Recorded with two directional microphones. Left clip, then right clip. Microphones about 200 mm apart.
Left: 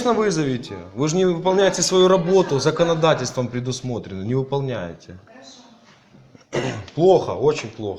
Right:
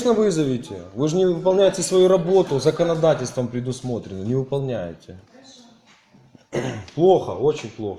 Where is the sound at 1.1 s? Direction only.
15° right (ahead or behind).